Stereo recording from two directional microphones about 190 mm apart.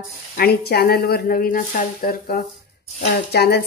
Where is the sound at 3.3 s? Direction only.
55° left (ahead or behind).